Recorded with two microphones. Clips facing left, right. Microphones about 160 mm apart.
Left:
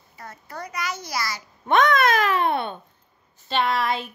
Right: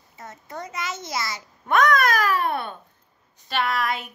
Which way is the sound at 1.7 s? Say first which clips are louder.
Left 1 dB; 25° left (ahead or behind).